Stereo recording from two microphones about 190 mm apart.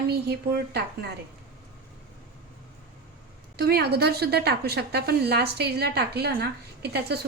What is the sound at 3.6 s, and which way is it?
A woman's voice, 55° right (ahead or behind).